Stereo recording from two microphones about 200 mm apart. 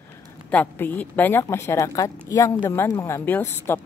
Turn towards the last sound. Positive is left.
turn(degrees=10)  # may be behind; listen again after turning